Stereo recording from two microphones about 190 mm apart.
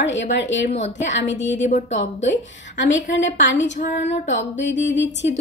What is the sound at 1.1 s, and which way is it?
Speech, 75° left (ahead or behind).